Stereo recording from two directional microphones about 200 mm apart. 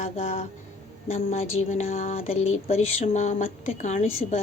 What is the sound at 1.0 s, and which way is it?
Speech, 35° left (ahead or behind).